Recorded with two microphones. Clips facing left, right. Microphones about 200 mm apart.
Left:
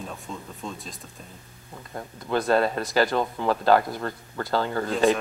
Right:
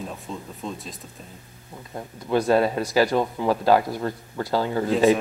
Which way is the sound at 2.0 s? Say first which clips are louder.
Right 3 dB; 15° right (ahead or behind).